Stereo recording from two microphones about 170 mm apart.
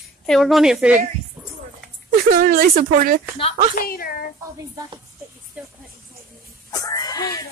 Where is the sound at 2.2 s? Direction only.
60° right (ahead or behind).